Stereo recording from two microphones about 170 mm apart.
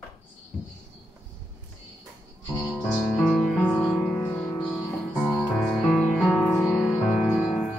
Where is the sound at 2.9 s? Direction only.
Centre (ahead or behind).